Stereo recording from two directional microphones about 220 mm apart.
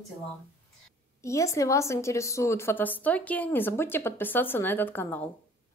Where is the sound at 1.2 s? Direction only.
15° left (ahead or behind).